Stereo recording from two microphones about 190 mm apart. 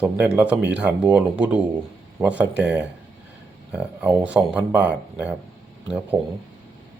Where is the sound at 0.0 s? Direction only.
5° right (ahead or behind).